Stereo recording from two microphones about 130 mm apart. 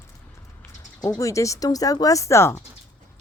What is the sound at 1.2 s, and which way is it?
Speech, 25° left (ahead or behind).